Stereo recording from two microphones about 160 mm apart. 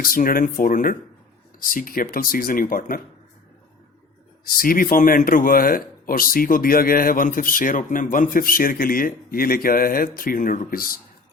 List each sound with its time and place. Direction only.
0.0 s speech: 60° left (ahead or behind)
4.5 s speech: 65° left (ahead or behind)